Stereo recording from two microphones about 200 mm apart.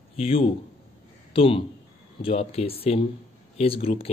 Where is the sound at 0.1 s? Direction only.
30° left (ahead or behind).